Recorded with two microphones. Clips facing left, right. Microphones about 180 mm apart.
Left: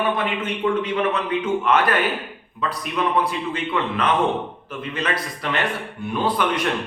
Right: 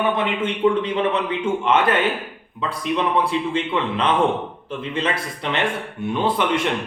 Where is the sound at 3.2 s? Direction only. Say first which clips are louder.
Right 3 dB; 30° right (ahead or behind).